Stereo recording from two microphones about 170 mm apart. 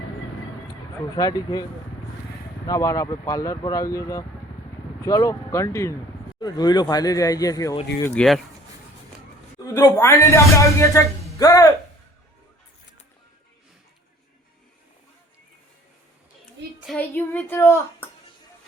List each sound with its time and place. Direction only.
1.1 s speech: 20° left (ahead or behind)
2.6 s speech: 20° left (ahead or behind)
8.0 s speech: 5° left (ahead or behind)
9.6 s speech: 20° left (ahead or behind)
16.8 s a sound: centre (ahead or behind)
17.2 s a sound: 15° left (ahead or behind)